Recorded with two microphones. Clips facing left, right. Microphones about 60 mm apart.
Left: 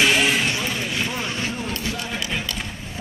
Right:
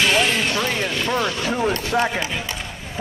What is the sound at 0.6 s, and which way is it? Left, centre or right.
A man's voice, right.